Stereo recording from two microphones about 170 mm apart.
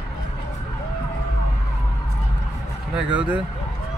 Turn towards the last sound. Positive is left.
turn(degrees=-10)  # may be behind; listen again after turning